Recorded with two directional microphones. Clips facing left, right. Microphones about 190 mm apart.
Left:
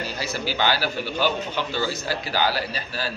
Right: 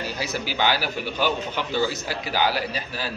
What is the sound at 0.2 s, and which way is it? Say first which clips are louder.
A man's voice: even; 15° right (ahead or behind).